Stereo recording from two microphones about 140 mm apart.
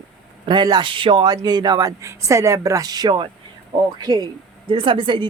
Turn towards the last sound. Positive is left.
turn(degrees=-35)  # may be behind; listen again after turning